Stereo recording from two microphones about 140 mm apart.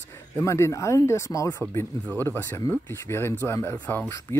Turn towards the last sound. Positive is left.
turn(degrees=15)  # may be behind; listen again after turning